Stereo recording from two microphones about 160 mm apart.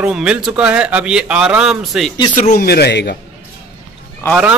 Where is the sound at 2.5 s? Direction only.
80° left.